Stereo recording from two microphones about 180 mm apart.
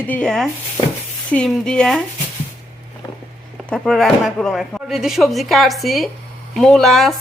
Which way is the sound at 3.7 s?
Centre (ahead or behind).